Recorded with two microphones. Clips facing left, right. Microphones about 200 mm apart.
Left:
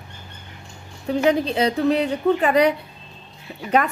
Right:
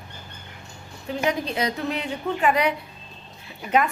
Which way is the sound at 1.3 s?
30° left (ahead or behind).